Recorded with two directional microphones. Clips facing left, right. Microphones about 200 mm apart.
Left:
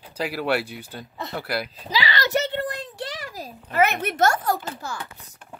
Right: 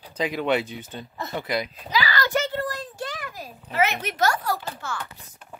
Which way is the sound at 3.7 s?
50° left (ahead or behind).